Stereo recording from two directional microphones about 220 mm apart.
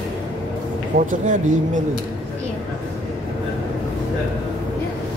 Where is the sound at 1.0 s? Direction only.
35° right (ahead or behind).